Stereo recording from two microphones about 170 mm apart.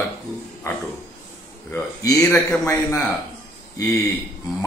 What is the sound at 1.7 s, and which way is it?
A man's voice, 15° left (ahead or behind).